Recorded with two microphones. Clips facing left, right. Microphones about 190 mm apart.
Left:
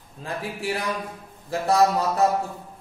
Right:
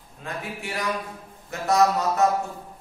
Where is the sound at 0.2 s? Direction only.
30° left (ahead or behind).